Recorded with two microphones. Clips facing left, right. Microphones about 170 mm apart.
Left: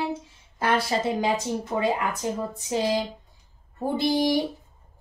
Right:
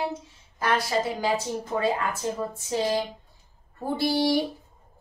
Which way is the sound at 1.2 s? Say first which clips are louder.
Left 1 dB; 20° left (ahead or behind).